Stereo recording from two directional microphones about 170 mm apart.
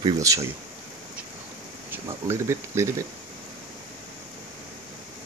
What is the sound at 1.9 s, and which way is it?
Speech, 15° right (ahead or behind).